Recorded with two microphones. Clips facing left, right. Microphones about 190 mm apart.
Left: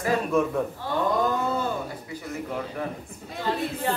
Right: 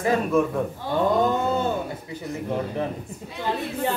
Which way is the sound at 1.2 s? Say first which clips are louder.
Right 3 dB; 25° right (ahead or behind).